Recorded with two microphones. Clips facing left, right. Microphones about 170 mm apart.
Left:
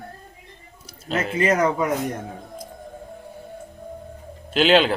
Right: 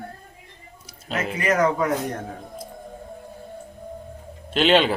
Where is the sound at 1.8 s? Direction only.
15° left (ahead or behind).